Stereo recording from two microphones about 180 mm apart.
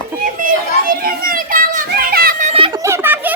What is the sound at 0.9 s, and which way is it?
Children playing, 55° right (ahead or behind).